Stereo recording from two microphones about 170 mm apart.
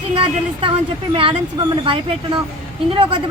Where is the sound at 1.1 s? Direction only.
30° right (ahead or behind).